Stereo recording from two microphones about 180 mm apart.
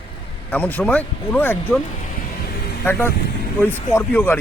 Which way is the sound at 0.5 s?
10° left (ahead or behind).